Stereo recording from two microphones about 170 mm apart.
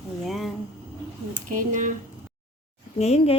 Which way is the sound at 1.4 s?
50° right (ahead or behind).